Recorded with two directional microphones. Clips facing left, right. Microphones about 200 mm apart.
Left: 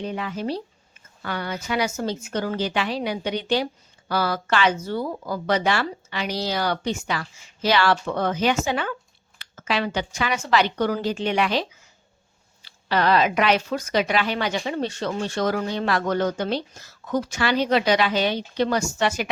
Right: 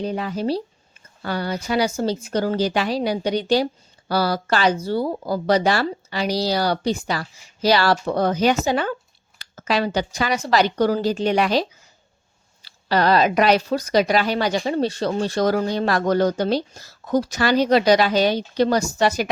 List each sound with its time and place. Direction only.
0.0 s speech: 35° right (ahead or behind)